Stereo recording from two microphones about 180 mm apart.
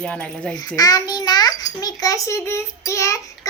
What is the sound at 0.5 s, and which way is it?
A child's voice, 20° left (ahead or behind).